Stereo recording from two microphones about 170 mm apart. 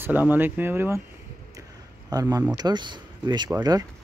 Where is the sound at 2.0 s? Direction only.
20° right (ahead or behind).